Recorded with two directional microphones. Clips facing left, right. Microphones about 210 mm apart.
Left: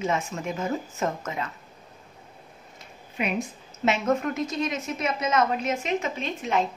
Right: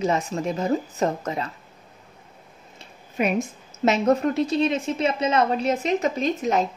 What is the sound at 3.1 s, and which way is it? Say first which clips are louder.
A woman's voice: right 5 dB; 45° right (ahead or behind).